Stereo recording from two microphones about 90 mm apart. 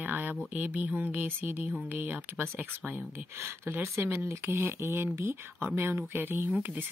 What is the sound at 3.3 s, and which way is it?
Speech, 30° right (ahead or behind).